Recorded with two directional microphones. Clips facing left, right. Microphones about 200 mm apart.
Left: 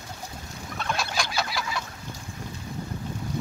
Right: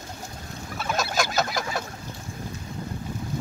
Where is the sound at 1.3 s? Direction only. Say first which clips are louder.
Right 4 dB; 45° right (ahead or behind).